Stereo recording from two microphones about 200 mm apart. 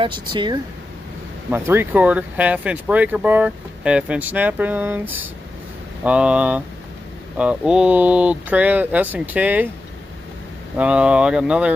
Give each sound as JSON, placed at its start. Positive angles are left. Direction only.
{"t": 0.0, "sound": "speech", "side_deg": -25}
{"t": 1.5, "sound": "speech", "side_deg": -10}
{"t": 10.8, "sound": "speech", "side_deg": -5}